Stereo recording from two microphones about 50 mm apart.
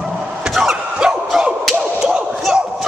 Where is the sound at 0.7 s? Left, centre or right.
Centre.